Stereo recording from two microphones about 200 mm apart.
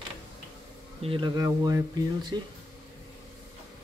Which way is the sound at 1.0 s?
25° right (ahead or behind).